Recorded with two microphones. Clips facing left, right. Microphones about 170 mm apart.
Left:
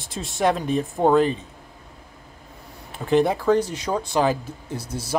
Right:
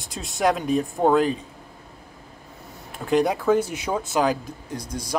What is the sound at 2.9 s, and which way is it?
Speech, centre (ahead or behind).